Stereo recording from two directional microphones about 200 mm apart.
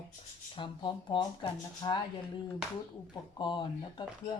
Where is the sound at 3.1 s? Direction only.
25° left (ahead or behind).